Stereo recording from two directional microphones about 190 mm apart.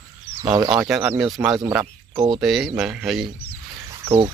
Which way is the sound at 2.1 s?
15° right (ahead or behind).